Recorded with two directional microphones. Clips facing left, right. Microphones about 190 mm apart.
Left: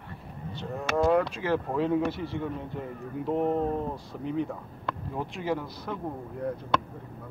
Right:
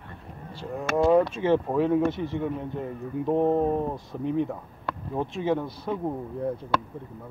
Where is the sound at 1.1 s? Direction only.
25° right (ahead or behind).